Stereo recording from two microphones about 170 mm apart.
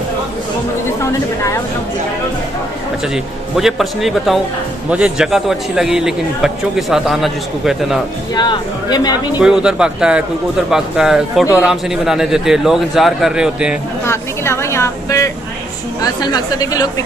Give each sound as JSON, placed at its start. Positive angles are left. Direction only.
{"t": 3.5, "sound": "a man's voice", "side_deg": 0}
{"t": 8.4, "sound": "speech", "side_deg": 25}
{"t": 9.4, "sound": "a man's voice", "side_deg": -5}
{"t": 14.0, "sound": "a woman's voice", "side_deg": 15}